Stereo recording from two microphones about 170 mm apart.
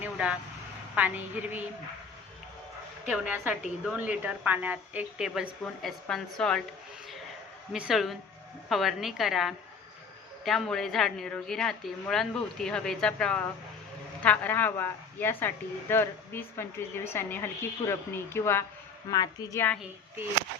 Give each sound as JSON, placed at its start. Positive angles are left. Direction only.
{"t": 0.0, "sound": "vehicle", "side_deg": -10}
{"t": 0.9, "sound": "speech", "side_deg": -10}
{"t": 3.1, "sound": "speech", "side_deg": -10}
{"t": 7.7, "sound": "a woman's voice", "side_deg": -5}